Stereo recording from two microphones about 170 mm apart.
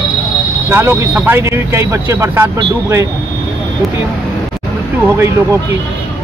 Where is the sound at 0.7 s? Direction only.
15° right (ahead or behind).